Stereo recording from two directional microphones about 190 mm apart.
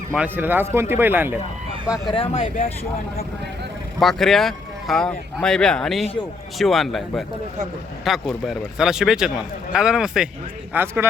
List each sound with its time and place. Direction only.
0.1 s speech: 10° right (ahead or behind)
2.1 s speech: 30° left (ahead or behind)
4.0 s a man's voice: centre (ahead or behind)